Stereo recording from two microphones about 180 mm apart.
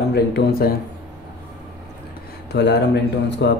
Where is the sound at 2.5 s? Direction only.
70° left (ahead or behind).